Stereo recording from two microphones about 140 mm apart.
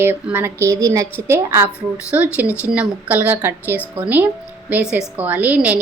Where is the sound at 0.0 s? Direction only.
15° right (ahead or behind).